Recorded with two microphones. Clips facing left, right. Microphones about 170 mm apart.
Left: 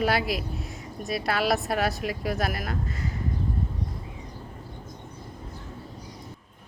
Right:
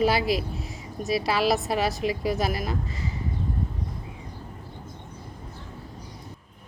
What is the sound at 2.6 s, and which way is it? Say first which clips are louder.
Speech: right 1 dB; 55° left (ahead or behind).